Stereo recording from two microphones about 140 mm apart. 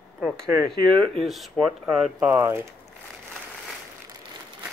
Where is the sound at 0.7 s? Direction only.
35° right (ahead or behind).